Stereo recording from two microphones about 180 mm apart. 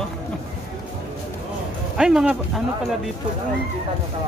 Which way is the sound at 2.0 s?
5° right (ahead or behind).